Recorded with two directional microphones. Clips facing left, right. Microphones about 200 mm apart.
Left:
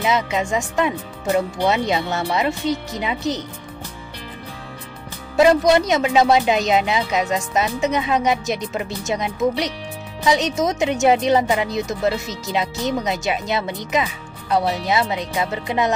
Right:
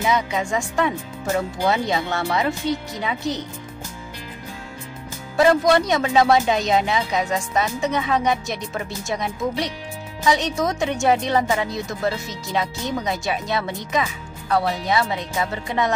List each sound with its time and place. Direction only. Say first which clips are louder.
0.0 s speech: left 1 dB; 20° left (ahead or behind)
5.3 s speech: left 2 dB; 20° left (ahead or behind)